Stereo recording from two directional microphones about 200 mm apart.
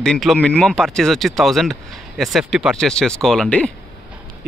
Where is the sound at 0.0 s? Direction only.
Centre (ahead or behind).